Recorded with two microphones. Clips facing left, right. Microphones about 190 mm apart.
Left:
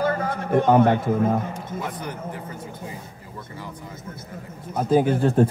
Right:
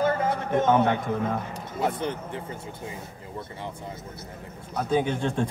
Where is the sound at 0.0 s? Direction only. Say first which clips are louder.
Even; 20° right (ahead or behind).